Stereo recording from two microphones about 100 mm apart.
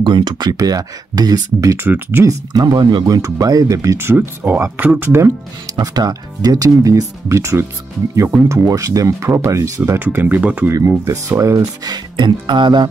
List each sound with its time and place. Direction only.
0.0 s speech: 50° right (ahead or behind); by 1.9 s 35° right (ahead or behind)
1.9 s speech: 20° right (ahead or behind)
2.2 s speech: 40° right (ahead or behind)
3.2 s speech: 35° right (ahead or behind)
5.8 s speech: 40° right (ahead or behind)
9.9 s speech: 20° right (ahead or behind)
10.7 s speech: 30° right (ahead or behind)
11.8 s speech: 45° right (ahead or behind)